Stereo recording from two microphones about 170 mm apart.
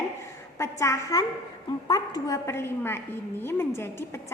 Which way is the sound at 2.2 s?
15° left (ahead or behind).